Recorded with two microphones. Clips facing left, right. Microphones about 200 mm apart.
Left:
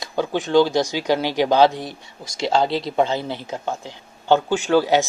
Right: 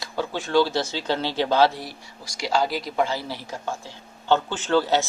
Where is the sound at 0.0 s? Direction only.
15° left (ahead or behind).